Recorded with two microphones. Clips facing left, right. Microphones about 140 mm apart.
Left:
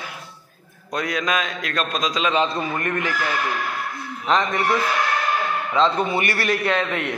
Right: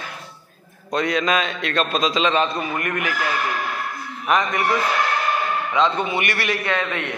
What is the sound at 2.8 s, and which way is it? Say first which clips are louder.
Speech: even; 30° left (ahead or behind).